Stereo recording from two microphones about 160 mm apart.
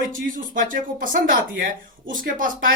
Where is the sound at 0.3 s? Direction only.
60° right (ahead or behind).